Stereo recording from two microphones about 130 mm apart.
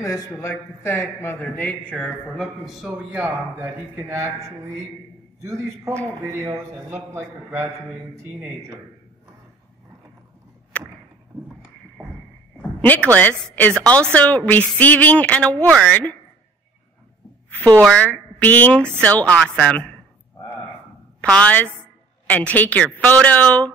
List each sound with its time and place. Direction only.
0.0 s a man's voice: 25° left (ahead or behind); by 8.7 s 20° right (ahead or behind)
10.7 s a sound: 10° left (ahead or behind)
12.8 s a woman's voice: 10° left (ahead or behind)
17.9 s a woman's voice: 10° left (ahead or behind)
21.2 s a woman's voice: 10° left (ahead or behind)